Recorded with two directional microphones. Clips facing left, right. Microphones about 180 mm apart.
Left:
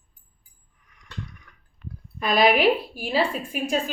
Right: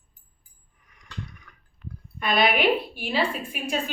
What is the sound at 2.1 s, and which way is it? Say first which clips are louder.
A woman's voice: left 3 dB; 35° left (ahead or behind).